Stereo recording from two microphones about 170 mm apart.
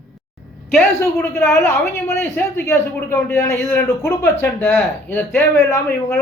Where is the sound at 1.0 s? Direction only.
15° left (ahead or behind).